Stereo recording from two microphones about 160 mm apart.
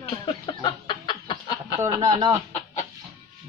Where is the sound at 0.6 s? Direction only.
30° left (ahead or behind).